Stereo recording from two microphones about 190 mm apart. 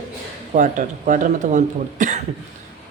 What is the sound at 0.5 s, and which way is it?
Speech, 45° right (ahead or behind).